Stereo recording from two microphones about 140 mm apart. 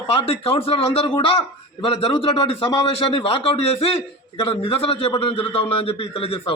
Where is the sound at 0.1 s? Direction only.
45° left (ahead or behind).